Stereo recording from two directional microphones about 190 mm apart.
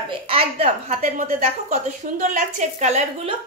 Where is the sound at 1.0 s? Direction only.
45° right (ahead or behind).